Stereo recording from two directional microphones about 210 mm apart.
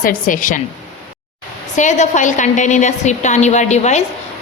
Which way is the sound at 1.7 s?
35° left (ahead or behind).